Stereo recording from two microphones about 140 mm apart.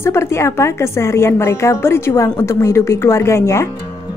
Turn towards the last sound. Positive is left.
turn(degrees=20)  # may be behind; listen again after turning